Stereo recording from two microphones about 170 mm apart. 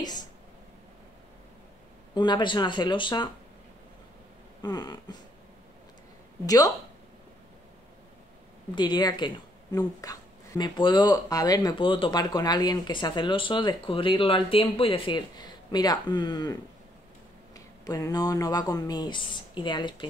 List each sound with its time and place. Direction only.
0.0 s speech: 25° left (ahead or behind)
2.1 s speech: 25° left (ahead or behind)
4.6 s speech: 25° left (ahead or behind)
6.4 s speech: 20° left (ahead or behind)
8.7 s speech: 25° left (ahead or behind)
17.6 s speech: 20° left (ahead or behind)